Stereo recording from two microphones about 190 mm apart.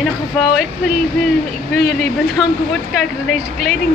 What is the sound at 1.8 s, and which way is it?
Speech, 55° left (ahead or behind).